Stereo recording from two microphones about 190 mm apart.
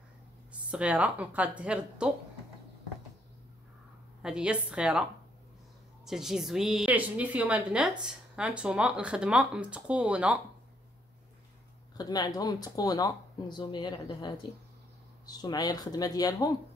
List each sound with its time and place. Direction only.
0.5 s speech: 5° right (ahead or behind)
4.2 s speech: 5° right (ahead or behind)
6.0 s speech: centre (ahead or behind)
12.0 s speech: 20° left (ahead or behind)